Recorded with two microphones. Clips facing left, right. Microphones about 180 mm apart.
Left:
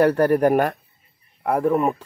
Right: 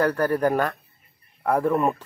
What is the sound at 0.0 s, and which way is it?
Speech, 25° left (ahead or behind).